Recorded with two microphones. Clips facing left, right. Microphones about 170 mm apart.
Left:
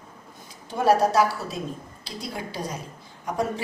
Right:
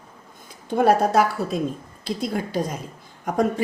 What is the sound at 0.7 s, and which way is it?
A woman's voice, 55° right (ahead or behind).